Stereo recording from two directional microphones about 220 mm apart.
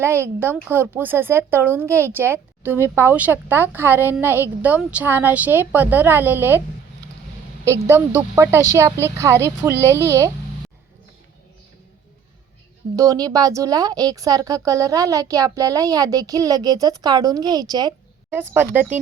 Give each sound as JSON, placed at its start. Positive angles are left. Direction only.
{"t": 0.0, "sound": "a woman's voice", "side_deg": -10}
{"t": 7.7, "sound": "a woman's voice", "side_deg": -10}
{"t": 13.0, "sound": "a woman's voice", "side_deg": -15}